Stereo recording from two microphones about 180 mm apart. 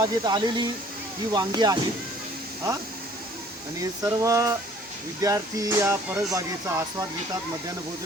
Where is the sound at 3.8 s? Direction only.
20° right (ahead or behind).